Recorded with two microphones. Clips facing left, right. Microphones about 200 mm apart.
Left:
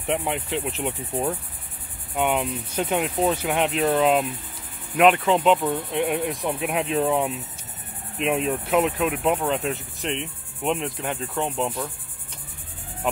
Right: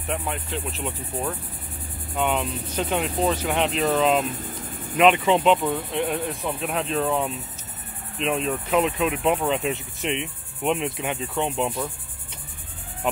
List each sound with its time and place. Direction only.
0.0 s speech: 20° left (ahead or behind); by 11.9 s 5° right (ahead or behind)